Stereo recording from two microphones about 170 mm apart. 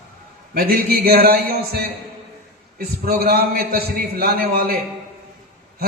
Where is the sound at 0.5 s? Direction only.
65° right (ahead or behind).